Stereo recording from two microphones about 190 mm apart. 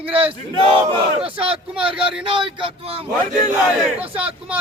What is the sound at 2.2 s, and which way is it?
Speech, 25° right (ahead or behind).